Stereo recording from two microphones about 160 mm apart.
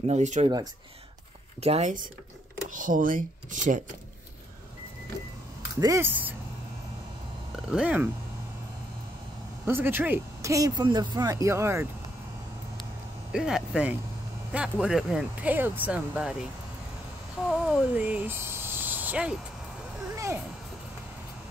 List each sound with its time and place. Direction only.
0.0 s speech: 45° right (ahead or behind)
1.6 s speech: 40° right (ahead or behind)
5.8 s speech: 20° right (ahead or behind)
7.7 s speech: 10° right (ahead or behind)
9.7 s speech: 15° right (ahead or behind)
13.3 s speech: 5° right (ahead or behind)
17.5 s speech: 5° right (ahead or behind)